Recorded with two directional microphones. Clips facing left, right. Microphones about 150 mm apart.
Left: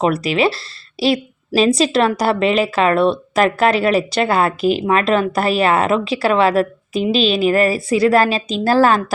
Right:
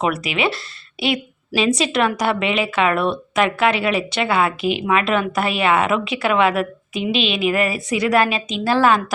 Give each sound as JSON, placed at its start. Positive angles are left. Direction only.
{"t": 0.0, "sound": "a woman's voice", "side_deg": 35}